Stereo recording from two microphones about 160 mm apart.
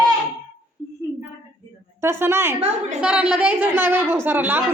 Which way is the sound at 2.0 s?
15° right (ahead or behind).